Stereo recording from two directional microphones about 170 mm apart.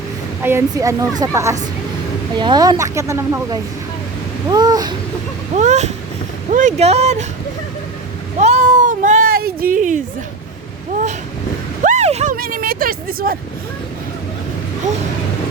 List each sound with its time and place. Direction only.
0.4 s speech: 15° right (ahead or behind)
5.5 s speech: 40° right (ahead or behind)
8.4 s cat: 40° right (ahead or behind)
11.8 s a sound: 45° right (ahead or behind)
12.4 s speech: 55° right (ahead or behind)